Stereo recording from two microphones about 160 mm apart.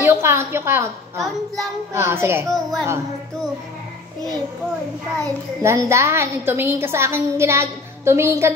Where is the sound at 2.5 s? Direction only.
Centre (ahead or behind).